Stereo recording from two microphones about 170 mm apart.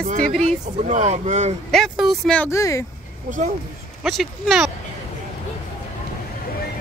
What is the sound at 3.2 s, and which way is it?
Speech, 50° right (ahead or behind).